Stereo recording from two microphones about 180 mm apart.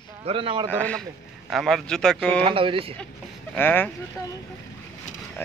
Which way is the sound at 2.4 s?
30° right (ahead or behind).